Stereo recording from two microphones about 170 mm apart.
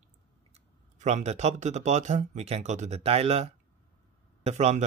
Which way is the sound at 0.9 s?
40° right (ahead or behind).